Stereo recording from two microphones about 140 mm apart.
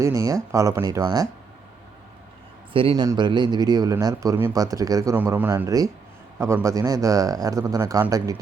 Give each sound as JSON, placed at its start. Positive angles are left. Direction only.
{"t": 0.0, "sound": "speech", "side_deg": -20}
{"t": 2.7, "sound": "speech", "side_deg": -35}
{"t": 5.1, "sound": "a man's voice", "side_deg": -15}